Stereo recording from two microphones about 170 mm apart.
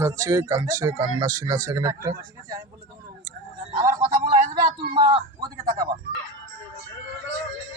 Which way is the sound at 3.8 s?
20° right (ahead or behind).